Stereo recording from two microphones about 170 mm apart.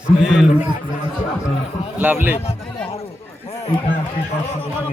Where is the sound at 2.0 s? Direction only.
10° right (ahead or behind).